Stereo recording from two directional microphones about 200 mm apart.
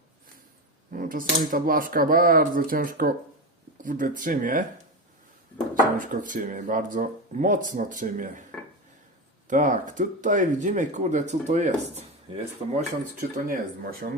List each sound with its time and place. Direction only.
0.9 s speech: 45° right (ahead or behind)
6.0 s speech: 40° right (ahead or behind)
9.5 s speech: 40° right (ahead or behind)